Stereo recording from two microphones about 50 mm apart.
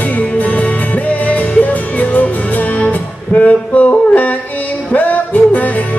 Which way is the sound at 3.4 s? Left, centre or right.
Left.